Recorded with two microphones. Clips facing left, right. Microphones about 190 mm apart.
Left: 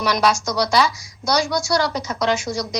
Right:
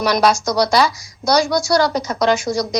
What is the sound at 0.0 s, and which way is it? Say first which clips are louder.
A woman's voice: right 4 dB; 40° right (ahead or behind).